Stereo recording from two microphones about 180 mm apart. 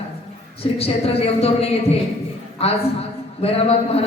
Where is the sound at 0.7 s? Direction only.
35° left (ahead or behind).